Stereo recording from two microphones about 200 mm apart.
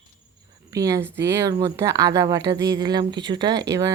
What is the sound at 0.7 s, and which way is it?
Speech, 15° right (ahead or behind).